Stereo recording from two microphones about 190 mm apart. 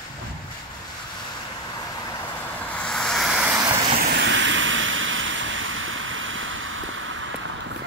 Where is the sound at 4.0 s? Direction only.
60° right (ahead or behind).